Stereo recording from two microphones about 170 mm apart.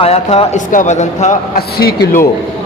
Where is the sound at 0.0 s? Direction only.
35° left (ahead or behind).